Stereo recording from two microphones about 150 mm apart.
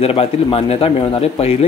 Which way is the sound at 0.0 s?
40° left (ahead or behind).